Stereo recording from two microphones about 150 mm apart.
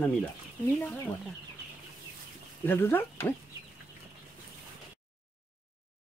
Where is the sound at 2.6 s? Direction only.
15° left (ahead or behind).